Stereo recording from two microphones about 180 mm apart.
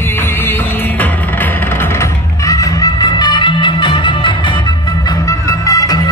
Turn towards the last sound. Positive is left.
turn(degrees=20)  # may be behind; listen again after turning